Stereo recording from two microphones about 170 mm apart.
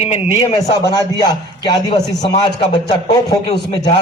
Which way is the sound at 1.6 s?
25° left (ahead or behind).